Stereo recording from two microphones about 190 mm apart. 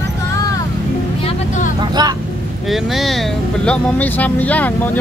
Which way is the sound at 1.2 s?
30° left (ahead or behind).